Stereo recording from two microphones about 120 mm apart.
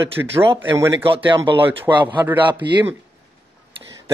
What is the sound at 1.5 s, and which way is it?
Speech, 45° right (ahead or behind).